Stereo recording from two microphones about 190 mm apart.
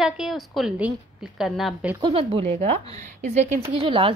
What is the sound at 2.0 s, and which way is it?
Speech, 25° right (ahead or behind).